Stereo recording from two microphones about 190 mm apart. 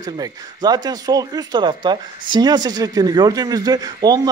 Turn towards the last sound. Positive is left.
turn(degrees=-20)  # may be behind; listen again after turning